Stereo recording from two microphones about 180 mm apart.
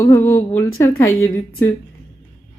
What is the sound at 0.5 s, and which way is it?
Speech, 15° left (ahead or behind).